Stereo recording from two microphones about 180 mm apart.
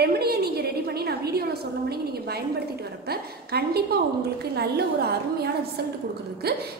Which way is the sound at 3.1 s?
60° right (ahead or behind).